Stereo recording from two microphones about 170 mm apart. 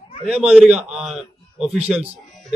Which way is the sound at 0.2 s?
5° right (ahead or behind).